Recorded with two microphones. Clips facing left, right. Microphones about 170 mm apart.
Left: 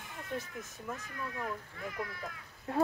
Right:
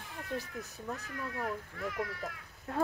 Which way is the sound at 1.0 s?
70° right (ahead or behind).